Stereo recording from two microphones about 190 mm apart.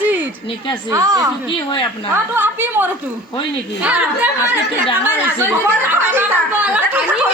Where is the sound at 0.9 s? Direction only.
15° right (ahead or behind).